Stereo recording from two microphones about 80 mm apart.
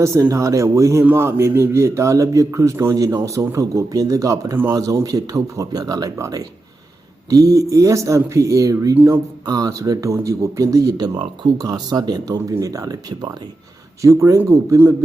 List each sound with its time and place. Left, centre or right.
0.0 s a man's voice: right
6.1 s a man's voice: right